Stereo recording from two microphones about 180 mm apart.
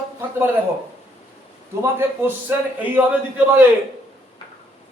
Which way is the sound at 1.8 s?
10° right (ahead or behind).